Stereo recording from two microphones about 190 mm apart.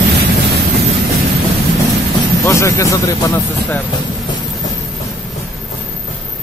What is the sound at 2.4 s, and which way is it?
Speech, 15° left (ahead or behind).